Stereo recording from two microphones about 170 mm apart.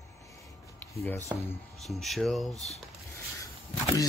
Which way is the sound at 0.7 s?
10° left (ahead or behind).